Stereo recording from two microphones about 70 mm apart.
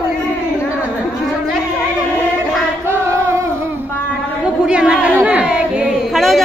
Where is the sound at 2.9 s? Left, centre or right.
Right.